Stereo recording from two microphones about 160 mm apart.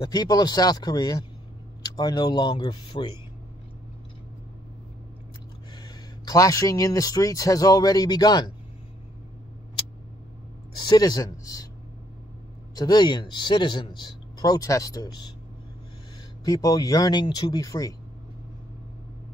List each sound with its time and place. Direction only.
0.0 s speech: 25° left (ahead or behind)
5.8 s speech: 25° left (ahead or behind)
10.9 s speech: 25° left (ahead or behind)
12.7 s speech: 25° left (ahead or behind)
16.4 s speech: 20° left (ahead or behind)